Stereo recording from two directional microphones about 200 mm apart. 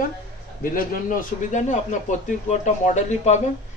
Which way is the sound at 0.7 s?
40° left (ahead or behind).